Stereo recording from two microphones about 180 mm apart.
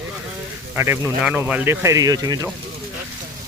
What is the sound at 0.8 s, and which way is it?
Speech, 15° right (ahead or behind).